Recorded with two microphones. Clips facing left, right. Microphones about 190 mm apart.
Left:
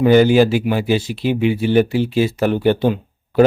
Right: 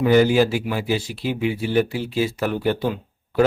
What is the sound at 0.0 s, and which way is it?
Speech, 25° left (ahead or behind).